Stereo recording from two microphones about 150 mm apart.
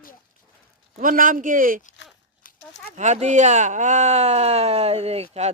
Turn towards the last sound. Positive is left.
turn(degrees=-45)  # may be behind; listen again after turning